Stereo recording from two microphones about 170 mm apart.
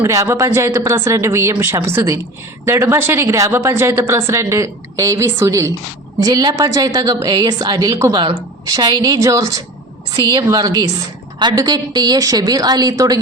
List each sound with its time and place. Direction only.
0.0 s a woman's voice: 15° right (ahead or behind)